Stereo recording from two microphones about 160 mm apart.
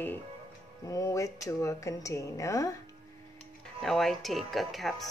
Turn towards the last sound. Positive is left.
turn(degrees=0)  # may be behind; listen again after turning